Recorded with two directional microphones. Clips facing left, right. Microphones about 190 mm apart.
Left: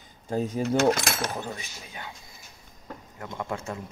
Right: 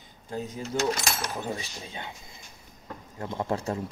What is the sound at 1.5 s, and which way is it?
Speech, 25° right (ahead or behind).